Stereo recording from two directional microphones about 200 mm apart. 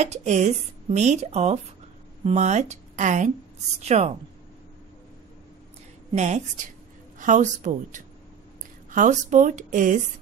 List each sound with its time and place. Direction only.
0.0 s speech: 35° right (ahead or behind)
6.1 s speech: 35° right (ahead or behind)